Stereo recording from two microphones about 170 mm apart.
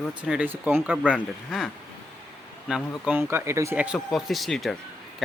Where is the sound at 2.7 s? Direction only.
5° right (ahead or behind).